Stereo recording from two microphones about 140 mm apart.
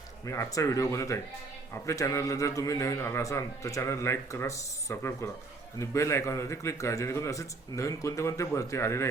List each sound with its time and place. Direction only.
0.3 s a man's voice: 20° left (ahead or behind)